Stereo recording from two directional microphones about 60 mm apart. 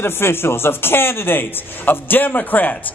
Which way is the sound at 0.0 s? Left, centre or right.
Left.